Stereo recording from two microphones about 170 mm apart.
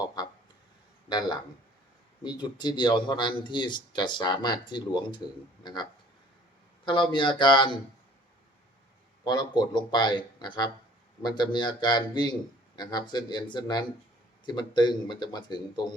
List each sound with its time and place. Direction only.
2.2 s speech: 25° left (ahead or behind)
9.2 s speech: 25° left (ahead or behind)